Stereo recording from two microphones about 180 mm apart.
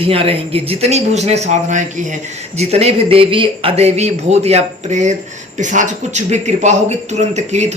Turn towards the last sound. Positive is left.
turn(degrees=-40)  # may be behind; listen again after turning